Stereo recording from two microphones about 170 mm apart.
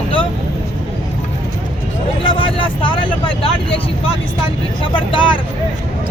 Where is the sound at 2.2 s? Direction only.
30° left (ahead or behind).